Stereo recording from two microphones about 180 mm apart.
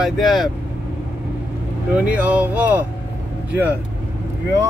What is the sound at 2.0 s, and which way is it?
Speech, 5° right (ahead or behind).